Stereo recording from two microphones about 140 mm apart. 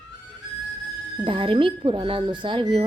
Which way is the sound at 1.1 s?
40° right (ahead or behind).